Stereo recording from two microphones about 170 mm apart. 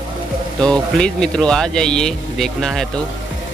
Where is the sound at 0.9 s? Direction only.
5° left (ahead or behind).